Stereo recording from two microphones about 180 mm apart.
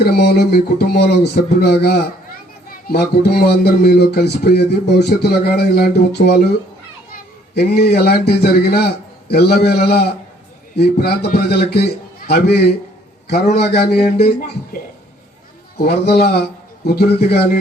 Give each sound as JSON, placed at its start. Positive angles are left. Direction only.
{"t": 0.0, "sound": "speech", "side_deg": 65}
{"t": 13.3, "sound": "speech", "side_deg": 60}
{"t": 15.8, "sound": "speech", "side_deg": 60}